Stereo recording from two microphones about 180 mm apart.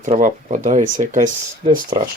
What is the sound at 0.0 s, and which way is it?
Speech, 45° right (ahead or behind).